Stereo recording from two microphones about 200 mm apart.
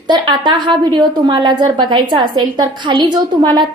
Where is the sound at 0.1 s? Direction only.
20° right (ahead or behind).